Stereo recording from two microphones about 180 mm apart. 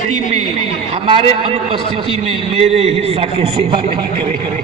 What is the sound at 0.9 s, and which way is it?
A man's voice, 30° right (ahead or behind).